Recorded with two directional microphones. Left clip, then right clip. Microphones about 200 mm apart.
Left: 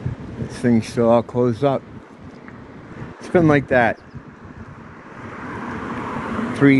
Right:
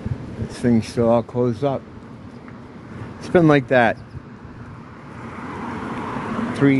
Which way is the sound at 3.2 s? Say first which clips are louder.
Right 1 dB; 5° right (ahead or behind).